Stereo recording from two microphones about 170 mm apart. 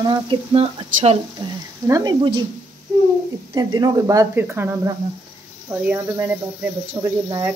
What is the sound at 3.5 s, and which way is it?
Speech, 20° right (ahead or behind).